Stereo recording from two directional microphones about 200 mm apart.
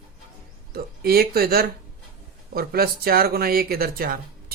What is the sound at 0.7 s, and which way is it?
Speech, 50° right (ahead or behind).